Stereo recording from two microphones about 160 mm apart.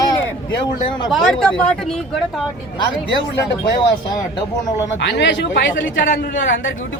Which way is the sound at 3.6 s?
25° left (ahead or behind).